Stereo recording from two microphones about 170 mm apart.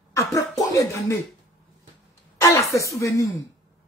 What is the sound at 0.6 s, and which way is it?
Speech, 20° left (ahead or behind).